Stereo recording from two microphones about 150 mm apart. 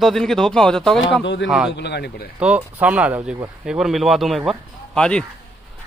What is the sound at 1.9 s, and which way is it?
Speech, 90° left.